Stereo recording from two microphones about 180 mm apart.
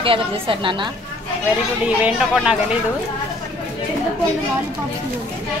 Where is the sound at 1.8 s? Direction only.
5° right (ahead or behind).